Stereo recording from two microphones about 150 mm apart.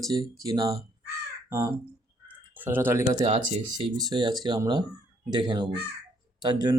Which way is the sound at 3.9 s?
30° right (ahead or behind).